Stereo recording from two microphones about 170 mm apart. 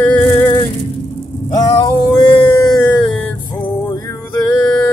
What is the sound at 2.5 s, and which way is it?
Music, 10° left (ahead or behind).